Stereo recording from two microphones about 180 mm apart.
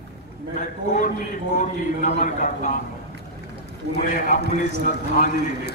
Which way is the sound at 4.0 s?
50° left (ahead or behind).